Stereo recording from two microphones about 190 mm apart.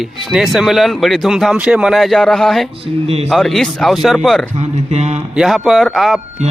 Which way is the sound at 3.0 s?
35° right (ahead or behind).